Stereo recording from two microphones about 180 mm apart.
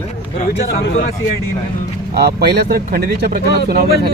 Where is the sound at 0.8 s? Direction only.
75° left (ahead or behind).